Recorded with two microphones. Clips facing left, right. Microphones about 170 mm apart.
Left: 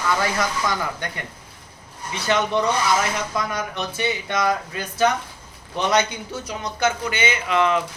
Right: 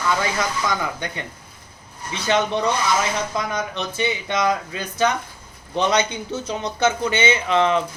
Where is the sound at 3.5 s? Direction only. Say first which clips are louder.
Right 1 dB; 20° right (ahead or behind).